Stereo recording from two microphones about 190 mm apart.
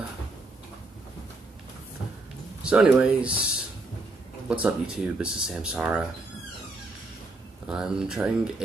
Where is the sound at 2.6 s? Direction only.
5° right (ahead or behind).